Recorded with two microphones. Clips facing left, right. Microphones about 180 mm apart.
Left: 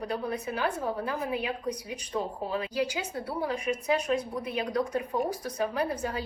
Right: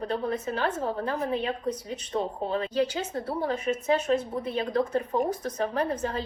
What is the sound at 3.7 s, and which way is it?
Speech, 35° right (ahead or behind).